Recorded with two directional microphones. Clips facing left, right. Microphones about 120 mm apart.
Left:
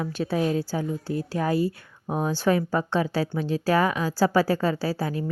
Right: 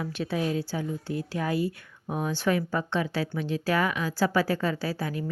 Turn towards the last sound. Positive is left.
turn(degrees=35)  # may be behind; listen again after turning